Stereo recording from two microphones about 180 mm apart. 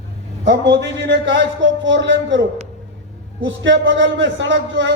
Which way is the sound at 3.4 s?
90° right.